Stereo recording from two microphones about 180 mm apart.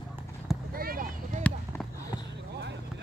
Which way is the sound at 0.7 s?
55° right (ahead or behind).